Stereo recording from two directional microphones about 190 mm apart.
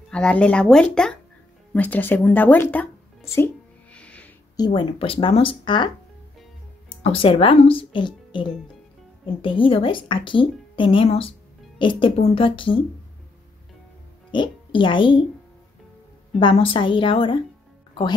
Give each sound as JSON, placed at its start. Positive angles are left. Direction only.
{"t": 0.1, "sound": "speech", "side_deg": 5}
{"t": 3.9, "sound": "a sound", "side_deg": 5}
{"t": 4.6, "sound": "a woman's voice", "side_deg": 25}
{"t": 6.9, "sound": "a woman's voice", "side_deg": 30}
{"t": 14.3, "sound": "a child's voice", "side_deg": 25}
{"t": 16.3, "sound": "a woman's voice", "side_deg": 25}